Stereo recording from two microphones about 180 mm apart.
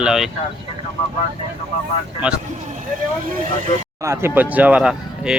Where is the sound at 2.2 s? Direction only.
5° right (ahead or behind).